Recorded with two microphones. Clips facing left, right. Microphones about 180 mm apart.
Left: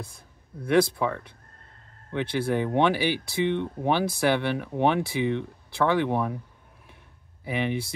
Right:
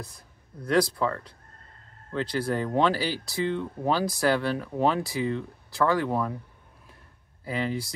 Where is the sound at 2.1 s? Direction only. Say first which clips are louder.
Left 2 dB; 20° left (ahead or behind).